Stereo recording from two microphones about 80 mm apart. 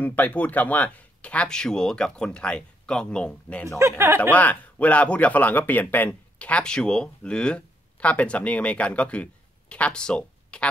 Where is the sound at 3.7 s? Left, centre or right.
Right.